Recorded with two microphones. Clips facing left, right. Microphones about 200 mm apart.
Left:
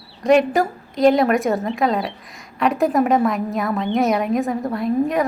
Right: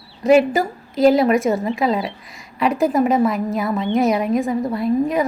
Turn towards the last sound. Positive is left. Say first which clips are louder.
# right 1 dB
turn(degrees=0)  # may be behind; listen again after turning